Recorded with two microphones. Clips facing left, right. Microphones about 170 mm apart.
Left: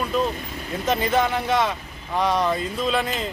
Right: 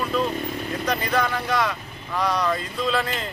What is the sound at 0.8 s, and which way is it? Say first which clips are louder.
Speech: left 4 dB; 25° left (ahead or behind).